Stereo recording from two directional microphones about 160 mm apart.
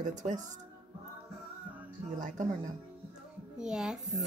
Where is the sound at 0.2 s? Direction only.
45° right (ahead or behind).